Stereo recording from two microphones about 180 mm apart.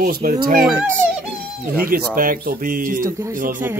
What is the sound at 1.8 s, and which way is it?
Speech, 55° right (ahead or behind).